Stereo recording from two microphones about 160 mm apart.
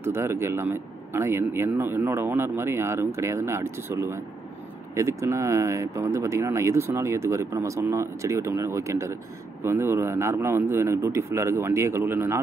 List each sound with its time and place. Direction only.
0.0 s speech: 15° right (ahead or behind)